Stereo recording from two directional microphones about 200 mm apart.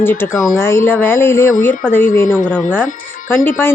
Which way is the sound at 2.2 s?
40° left (ahead or behind).